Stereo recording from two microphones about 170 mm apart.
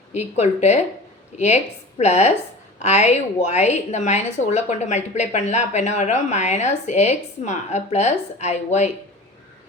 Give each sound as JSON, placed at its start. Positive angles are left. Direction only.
{"t": 0.1, "sound": "a woman's voice", "side_deg": 40}